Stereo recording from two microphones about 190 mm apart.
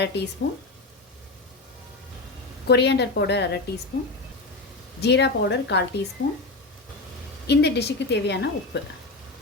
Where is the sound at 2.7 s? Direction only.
60° left (ahead or behind).